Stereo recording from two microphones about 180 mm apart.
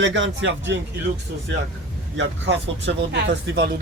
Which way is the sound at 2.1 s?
90° right.